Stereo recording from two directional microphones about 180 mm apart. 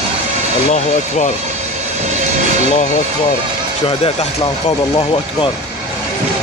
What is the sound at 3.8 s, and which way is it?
Speech, 30° left (ahead or behind).